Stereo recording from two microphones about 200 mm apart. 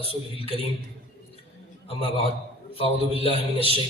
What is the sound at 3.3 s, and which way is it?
Speech, 30° right (ahead or behind).